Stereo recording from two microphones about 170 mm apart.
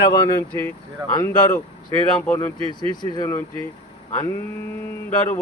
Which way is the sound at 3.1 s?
15° left (ahead or behind).